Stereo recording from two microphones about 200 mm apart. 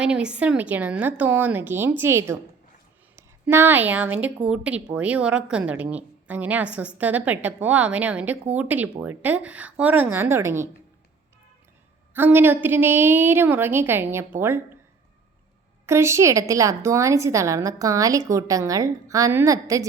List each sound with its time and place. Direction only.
0.0 s a woman's voice: 5° right (ahead or behind)
12.1 s a woman's voice: 10° right (ahead or behind)
15.9 s a woman's voice: 15° right (ahead or behind)